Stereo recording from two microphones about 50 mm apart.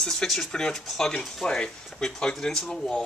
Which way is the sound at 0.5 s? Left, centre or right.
Centre.